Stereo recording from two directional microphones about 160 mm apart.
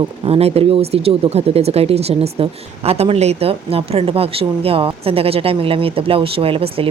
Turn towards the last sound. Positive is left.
turn(degrees=-35)  # may be behind; listen again after turning